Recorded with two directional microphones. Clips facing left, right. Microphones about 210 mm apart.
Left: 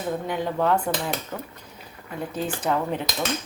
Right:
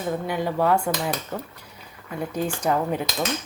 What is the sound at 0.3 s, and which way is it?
Speech, 10° right (ahead or behind).